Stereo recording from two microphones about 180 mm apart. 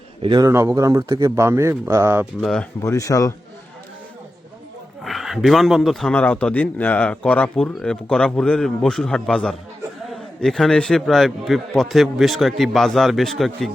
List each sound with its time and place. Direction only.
0.2 s speech: 25° right (ahead or behind)
2.4 s a man's voice: 5° left (ahead or behind)
2.8 s speech: 15° left (ahead or behind)
5.0 s a man's voice: centre (ahead or behind)